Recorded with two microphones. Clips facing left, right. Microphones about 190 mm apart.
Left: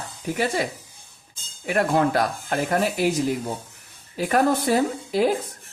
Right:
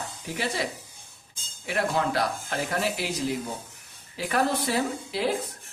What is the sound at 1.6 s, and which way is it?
Speech, 50° left (ahead or behind).